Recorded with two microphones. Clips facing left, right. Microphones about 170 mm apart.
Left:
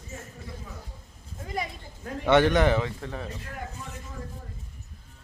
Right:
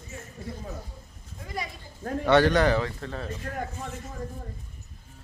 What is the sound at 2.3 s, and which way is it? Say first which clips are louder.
A man's voice: even; 20° left (ahead or behind).